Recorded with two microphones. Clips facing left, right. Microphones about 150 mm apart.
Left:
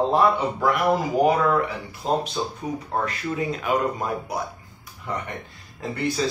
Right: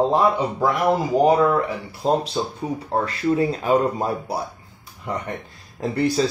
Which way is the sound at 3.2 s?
30° right (ahead or behind).